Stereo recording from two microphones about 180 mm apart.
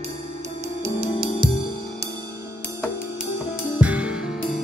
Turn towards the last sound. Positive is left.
turn(degrees=-5)  # may be behind; listen again after turning